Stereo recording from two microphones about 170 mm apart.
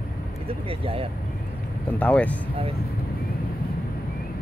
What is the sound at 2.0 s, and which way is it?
Speech, 10° left (ahead or behind).